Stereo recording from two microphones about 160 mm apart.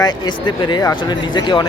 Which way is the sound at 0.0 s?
25° left (ahead or behind).